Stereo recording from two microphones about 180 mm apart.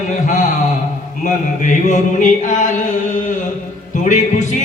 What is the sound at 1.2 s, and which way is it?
Mantra, 45° left (ahead or behind).